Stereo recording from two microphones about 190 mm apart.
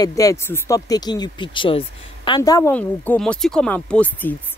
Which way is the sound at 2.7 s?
10° left (ahead or behind).